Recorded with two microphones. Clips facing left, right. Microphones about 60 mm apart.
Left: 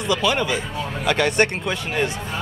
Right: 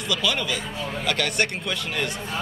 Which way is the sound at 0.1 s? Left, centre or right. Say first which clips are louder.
Left 5 dB; left.